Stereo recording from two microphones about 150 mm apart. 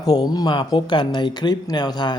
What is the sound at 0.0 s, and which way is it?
Speech, 25° left (ahead or behind).